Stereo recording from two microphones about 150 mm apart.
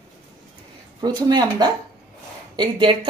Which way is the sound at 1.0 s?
30° right (ahead or behind).